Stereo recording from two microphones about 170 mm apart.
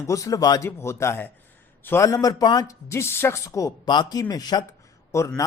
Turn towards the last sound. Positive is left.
turn(degrees=15)  # may be behind; listen again after turning